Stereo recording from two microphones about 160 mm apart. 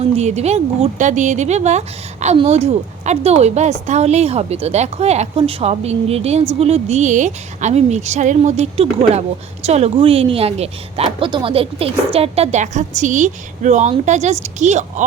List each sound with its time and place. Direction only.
0.0 s a woman's voice: 45° right (ahead or behind)